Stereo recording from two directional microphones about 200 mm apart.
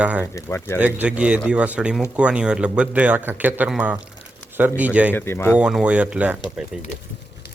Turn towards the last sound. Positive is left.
turn(degrees=0)  # may be behind; listen again after turning